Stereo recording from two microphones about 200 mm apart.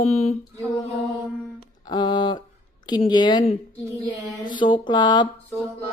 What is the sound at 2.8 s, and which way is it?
A woman's voice, 20° left (ahead or behind).